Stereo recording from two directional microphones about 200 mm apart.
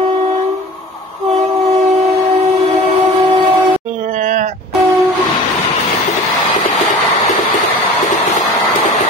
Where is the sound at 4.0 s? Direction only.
40° right (ahead or behind).